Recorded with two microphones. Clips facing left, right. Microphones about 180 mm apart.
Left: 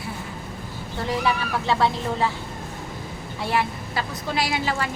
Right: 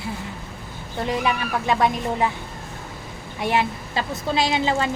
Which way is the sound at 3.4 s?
20° right (ahead or behind).